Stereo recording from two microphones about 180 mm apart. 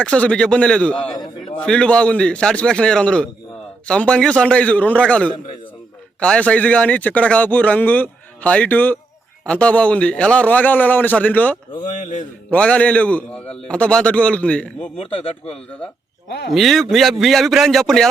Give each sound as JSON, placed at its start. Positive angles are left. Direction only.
{"t": 0.0, "sound": "a man's voice", "side_deg": 5}
{"t": 14.9, "sound": "speech", "side_deg": 30}
{"t": 16.5, "sound": "a man's voice", "side_deg": 0}